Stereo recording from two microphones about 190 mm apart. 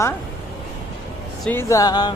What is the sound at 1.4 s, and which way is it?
Speech, 10° left (ahead or behind).